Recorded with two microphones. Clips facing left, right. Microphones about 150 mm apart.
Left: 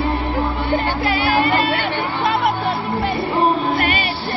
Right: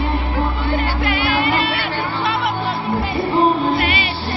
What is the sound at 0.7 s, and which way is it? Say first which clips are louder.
Music: left 1 dB; 35° left (ahead or behind).